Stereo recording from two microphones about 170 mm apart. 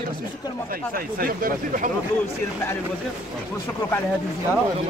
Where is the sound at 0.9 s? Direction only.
55° right (ahead or behind).